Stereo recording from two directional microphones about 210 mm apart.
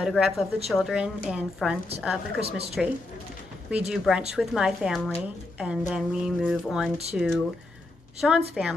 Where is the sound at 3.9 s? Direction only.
5° right (ahead or behind).